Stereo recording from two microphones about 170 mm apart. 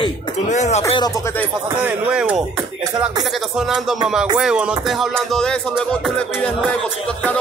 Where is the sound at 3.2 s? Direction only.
Centre (ahead or behind).